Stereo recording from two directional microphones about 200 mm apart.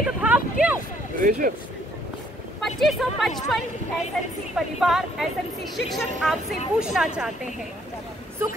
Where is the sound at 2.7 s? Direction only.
Centre (ahead or behind).